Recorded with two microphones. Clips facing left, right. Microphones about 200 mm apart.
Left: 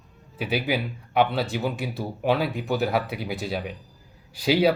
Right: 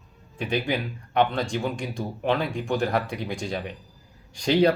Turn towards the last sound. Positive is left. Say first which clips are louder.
# right 1 dB
turn(degrees=5)  # may be behind; listen again after turning